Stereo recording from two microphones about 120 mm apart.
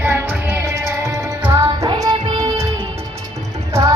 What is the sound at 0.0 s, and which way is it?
Music, 20° right (ahead or behind).